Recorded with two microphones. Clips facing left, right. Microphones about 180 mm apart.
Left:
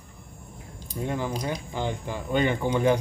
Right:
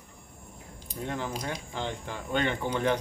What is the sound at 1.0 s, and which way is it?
Speech, 5° left (ahead or behind).